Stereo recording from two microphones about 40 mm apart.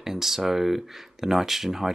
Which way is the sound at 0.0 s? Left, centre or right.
Centre.